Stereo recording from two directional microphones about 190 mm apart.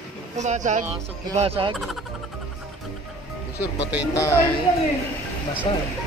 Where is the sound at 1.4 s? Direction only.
30° right (ahead or behind).